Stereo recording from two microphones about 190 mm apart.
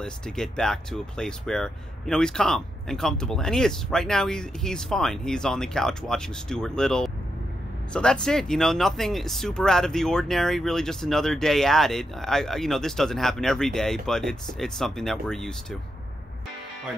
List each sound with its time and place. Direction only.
0.0 s speech: 5° left (ahead or behind)